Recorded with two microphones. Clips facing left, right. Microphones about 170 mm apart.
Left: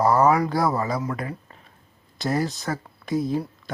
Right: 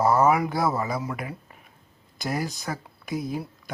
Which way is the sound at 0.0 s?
5° right (ahead or behind).